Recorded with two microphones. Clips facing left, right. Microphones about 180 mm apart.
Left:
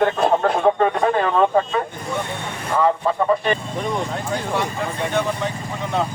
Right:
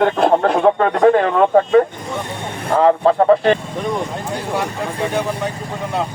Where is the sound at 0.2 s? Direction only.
65° right (ahead or behind).